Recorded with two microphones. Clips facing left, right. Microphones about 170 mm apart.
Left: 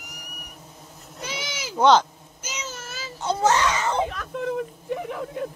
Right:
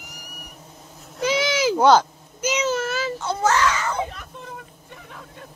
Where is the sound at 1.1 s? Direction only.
90° right.